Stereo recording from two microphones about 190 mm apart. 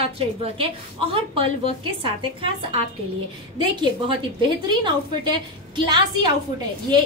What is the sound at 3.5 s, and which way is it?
Speech, 25° right (ahead or behind).